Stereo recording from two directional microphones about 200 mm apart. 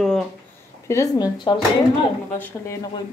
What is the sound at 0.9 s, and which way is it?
Speech, 15° left (ahead or behind).